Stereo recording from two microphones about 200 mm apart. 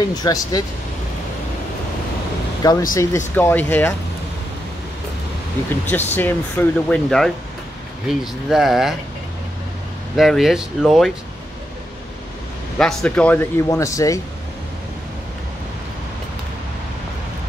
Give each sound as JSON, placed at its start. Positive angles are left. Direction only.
{"t": 0.1, "sound": "speech", "side_deg": 20}
{"t": 2.9, "sound": "speech", "side_deg": 15}
{"t": 5.7, "sound": "speech", "side_deg": 10}
{"t": 10.1, "sound": "speech", "side_deg": 0}
{"t": 12.7, "sound": "speech", "side_deg": 5}